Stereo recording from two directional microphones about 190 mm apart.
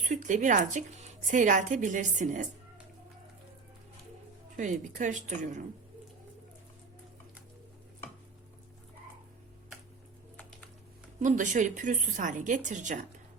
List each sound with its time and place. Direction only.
0.0 s speech: 40° right (ahead or behind)
4.5 s speech: 40° right (ahead or behind)
11.2 s speech: 40° right (ahead or behind)